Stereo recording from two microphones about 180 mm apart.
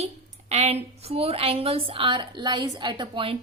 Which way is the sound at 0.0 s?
35° right (ahead or behind).